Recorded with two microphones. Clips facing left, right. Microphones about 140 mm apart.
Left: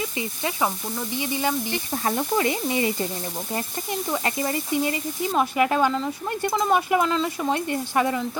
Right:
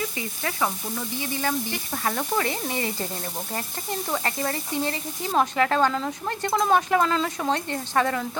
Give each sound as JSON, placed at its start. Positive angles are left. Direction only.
{"t": 0.2, "sound": "speech", "side_deg": 20}
{"t": 5.9, "sound": "speech", "side_deg": 0}